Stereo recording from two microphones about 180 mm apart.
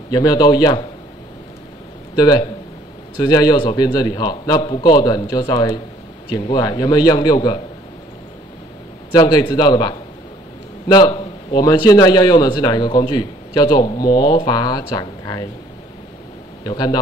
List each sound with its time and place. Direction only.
0.1 s a man's voice: 20° left (ahead or behind)
2.1 s a man's voice: 25° left (ahead or behind)
9.1 s a man's voice: 25° left (ahead or behind)
16.6 s a man's voice: 20° left (ahead or behind)